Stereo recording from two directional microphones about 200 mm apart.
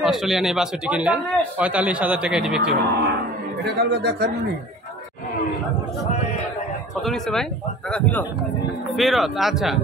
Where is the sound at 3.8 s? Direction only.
55° right (ahead or behind).